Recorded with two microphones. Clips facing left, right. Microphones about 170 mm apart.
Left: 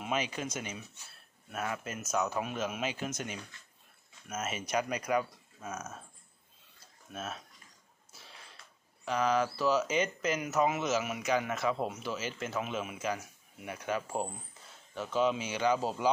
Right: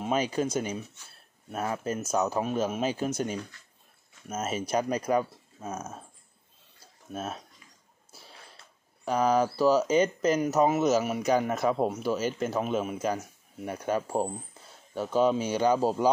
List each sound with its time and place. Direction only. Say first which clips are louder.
0.0 s speech: right 7 dB; 35° right (ahead or behind)
7.1 s speech: right 5 dB; 35° right (ahead or behind)
9.0 s speech: right 5 dB; 40° right (ahead or behind)